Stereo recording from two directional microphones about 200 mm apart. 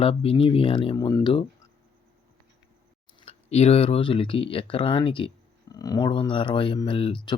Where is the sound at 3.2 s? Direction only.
30° left (ahead or behind).